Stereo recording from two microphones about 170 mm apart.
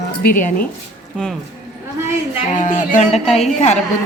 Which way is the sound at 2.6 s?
50° left (ahead or behind).